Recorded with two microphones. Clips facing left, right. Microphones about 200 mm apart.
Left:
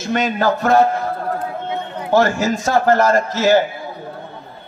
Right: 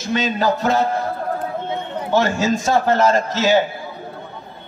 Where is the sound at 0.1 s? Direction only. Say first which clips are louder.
Left 1 dB; 55° left (ahead or behind).